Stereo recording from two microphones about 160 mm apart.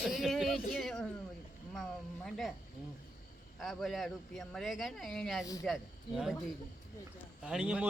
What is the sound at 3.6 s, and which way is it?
Speech, centre (ahead or behind).